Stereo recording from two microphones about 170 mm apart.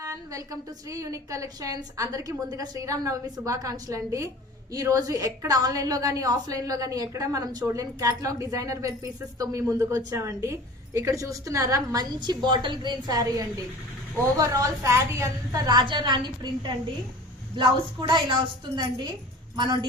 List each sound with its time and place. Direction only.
0.0 s speech: 20° right (ahead or behind)